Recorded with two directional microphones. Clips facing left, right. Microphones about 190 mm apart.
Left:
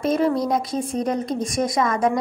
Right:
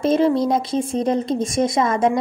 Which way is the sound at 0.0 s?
25° right (ahead or behind).